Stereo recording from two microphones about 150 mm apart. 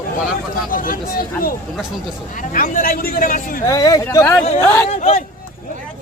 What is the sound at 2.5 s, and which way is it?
Speech, 70° left (ahead or behind).